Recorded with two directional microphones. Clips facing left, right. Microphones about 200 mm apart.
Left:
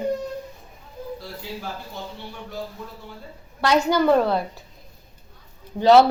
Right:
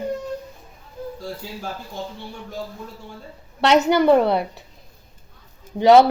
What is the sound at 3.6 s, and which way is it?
Speech, 25° right (ahead or behind).